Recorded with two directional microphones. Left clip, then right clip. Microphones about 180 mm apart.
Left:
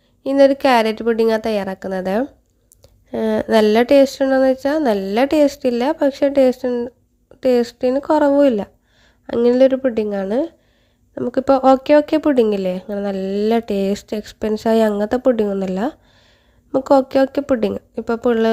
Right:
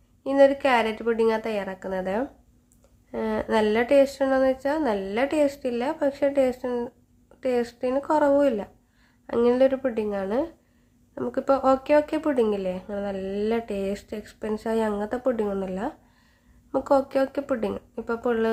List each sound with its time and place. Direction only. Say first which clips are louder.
0.3 s speech: left 6 dB; 45° left (ahead or behind)